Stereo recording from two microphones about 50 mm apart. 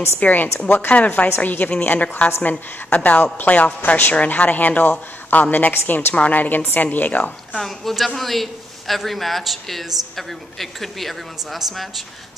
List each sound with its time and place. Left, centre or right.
0.2 s a woman's voice: left
7.5 s a man's voice: centre